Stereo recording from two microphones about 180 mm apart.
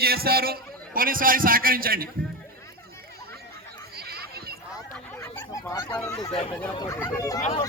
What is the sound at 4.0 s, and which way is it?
Neigh, 60° right (ahead or behind).